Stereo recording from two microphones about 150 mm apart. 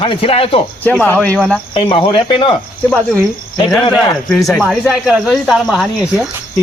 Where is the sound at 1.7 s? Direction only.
35° left (ahead or behind).